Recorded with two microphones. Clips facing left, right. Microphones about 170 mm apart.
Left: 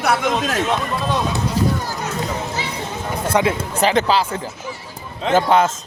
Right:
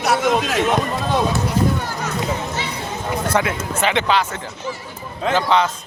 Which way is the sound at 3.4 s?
25° left (ahead or behind).